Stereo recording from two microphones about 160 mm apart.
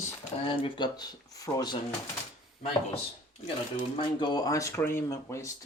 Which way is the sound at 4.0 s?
30° left (ahead or behind).